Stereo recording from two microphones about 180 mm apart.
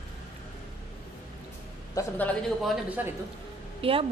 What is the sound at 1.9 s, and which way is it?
Speech, 10° left (ahead or behind).